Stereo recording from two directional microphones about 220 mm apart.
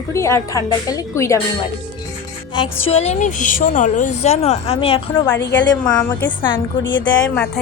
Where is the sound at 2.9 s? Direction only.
30° left (ahead or behind).